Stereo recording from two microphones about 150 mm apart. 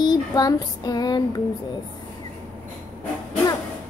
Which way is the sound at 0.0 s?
25° left (ahead or behind).